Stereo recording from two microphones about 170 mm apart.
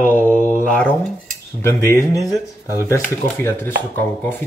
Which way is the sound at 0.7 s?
10° left (ahead or behind).